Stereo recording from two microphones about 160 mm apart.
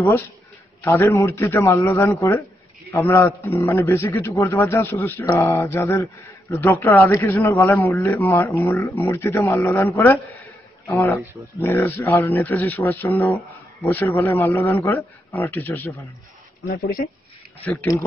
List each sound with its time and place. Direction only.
0.8 s a man's voice: 15° left (ahead or behind)
16.6 s speech: 70° left (ahead or behind)
17.6 s speech: 10° left (ahead or behind)